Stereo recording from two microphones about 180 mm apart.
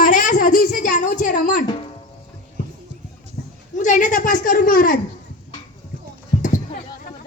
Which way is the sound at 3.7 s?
45° left (ahead or behind).